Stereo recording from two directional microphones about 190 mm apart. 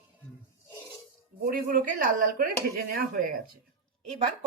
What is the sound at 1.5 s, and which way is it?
Speech, 45° right (ahead or behind).